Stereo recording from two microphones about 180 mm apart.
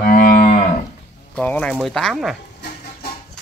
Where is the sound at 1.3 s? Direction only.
5° left (ahead or behind).